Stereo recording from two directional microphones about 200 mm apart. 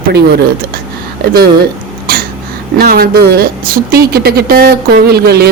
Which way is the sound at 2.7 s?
45° right (ahead or behind).